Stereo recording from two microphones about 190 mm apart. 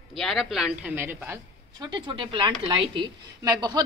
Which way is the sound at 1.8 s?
25° right (ahead or behind).